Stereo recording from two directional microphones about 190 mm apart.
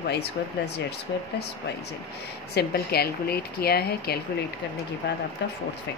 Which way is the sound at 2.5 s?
55° left (ahead or behind).